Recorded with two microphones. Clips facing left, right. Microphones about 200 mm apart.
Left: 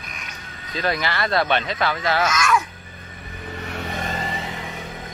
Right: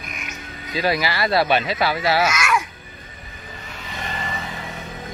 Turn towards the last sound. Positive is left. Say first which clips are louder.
# left 4 dB
turn(degrees=40)  # may be behind; listen again after turning